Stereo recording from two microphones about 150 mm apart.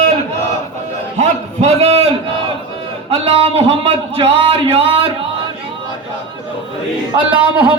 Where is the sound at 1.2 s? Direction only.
45° right (ahead or behind).